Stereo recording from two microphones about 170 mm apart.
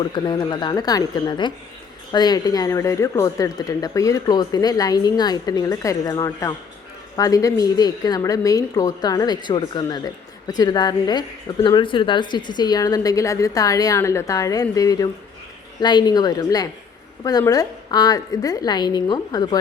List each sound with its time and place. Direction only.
0.0 s a woman's voice: 25° left (ahead or behind)